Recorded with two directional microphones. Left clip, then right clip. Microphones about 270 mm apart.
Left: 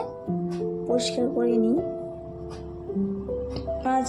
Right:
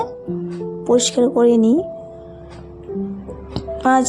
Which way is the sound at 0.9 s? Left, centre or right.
Right.